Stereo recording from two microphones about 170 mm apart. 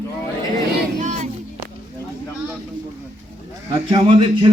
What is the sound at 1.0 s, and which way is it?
Music, 45° right (ahead or behind).